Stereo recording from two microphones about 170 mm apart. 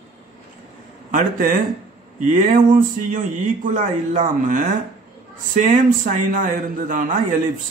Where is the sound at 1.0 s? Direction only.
50° right (ahead or behind).